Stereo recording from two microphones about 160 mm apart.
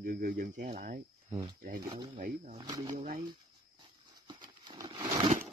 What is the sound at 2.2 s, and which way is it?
Speech, 60° right (ahead or behind).